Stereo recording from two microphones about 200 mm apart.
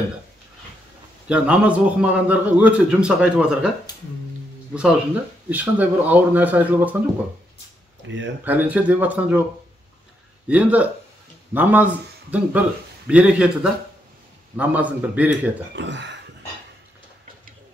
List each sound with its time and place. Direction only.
1.3 s a man's voice: 5° right (ahead or behind)
5.5 s a man's voice: 10° right (ahead or behind)
8.5 s a man's voice: 10° right (ahead or behind)
10.5 s a man's voice: 5° right (ahead or behind)
15.7 s speech: 60° right (ahead or behind)